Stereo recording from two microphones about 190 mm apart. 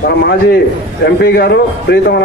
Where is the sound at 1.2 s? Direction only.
60° left (ahead or behind).